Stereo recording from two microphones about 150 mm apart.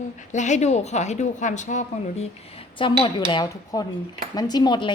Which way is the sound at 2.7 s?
30° left (ahead or behind).